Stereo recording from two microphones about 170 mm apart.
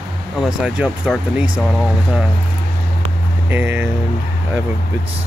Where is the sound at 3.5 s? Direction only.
10° right (ahead or behind).